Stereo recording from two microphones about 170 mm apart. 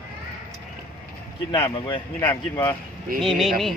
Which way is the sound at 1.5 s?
20° left (ahead or behind).